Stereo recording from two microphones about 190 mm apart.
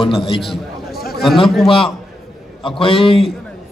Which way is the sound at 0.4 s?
Centre (ahead or behind).